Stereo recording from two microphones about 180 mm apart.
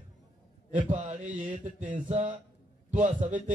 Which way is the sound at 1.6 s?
45° right (ahead or behind).